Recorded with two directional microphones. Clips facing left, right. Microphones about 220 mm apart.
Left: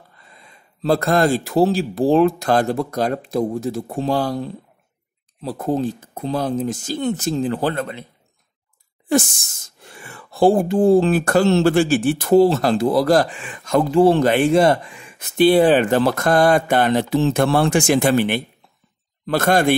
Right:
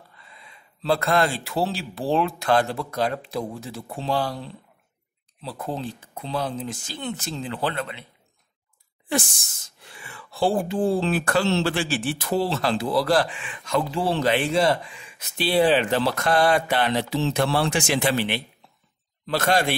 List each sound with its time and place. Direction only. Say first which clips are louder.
0.2 s speech: left 2 dB; 45° left (ahead or behind)
9.1 s speech: left 8 dB; 45° left (ahead or behind)